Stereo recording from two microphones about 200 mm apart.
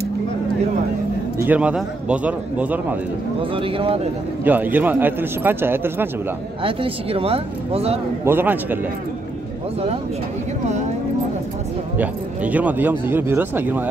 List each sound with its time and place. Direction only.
1.4 s speech: 5° right (ahead or behind)
3.5 s speech: 25° right (ahead or behind)
4.5 s speech: 10° right (ahead or behind)
6.6 s speech: 25° right (ahead or behind)
8.3 s speech: 10° right (ahead or behind)
12.0 s speech: 5° right (ahead or behind)